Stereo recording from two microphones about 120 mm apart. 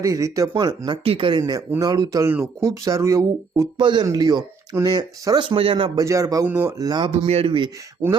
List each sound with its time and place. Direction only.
0.0 s speech: 25° right (ahead or behind)
1.0 s speech: 50° right (ahead or behind)
1.4 s speech: 30° right (ahead or behind)
3.8 s speech: 40° right (ahead or behind)
6.0 s speech: 30° right (ahead or behind)
6.4 s speech: 15° right (ahead or behind)
6.7 s speech: 35° right (ahead or behind)
7.3 s speech: 55° right (ahead or behind)